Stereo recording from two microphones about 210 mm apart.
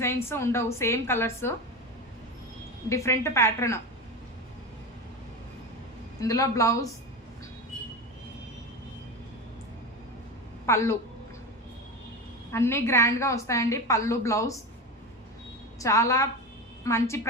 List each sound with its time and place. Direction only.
0.0 s a woman's voice: 10° left (ahead or behind)
2.9 s a woman's voice: 15° left (ahead or behind)
6.1 s a woman's voice: 15° left (ahead or behind)
10.7 s a woman's voice: 15° left (ahead or behind)
12.5 s a woman's voice: 10° left (ahead or behind)
15.8 s a woman's voice: 15° left (ahead or behind)